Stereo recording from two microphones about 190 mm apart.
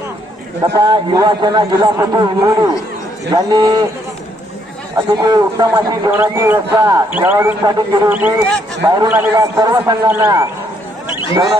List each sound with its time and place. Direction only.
0.8 s a man's voice: 20° right (ahead or behind)
5.1 s a man's voice: 20° right (ahead or behind)
8.8 s a man's voice: 20° right (ahead or behind)